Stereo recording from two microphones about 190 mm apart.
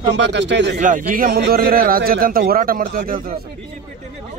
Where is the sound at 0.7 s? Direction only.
45° right (ahead or behind).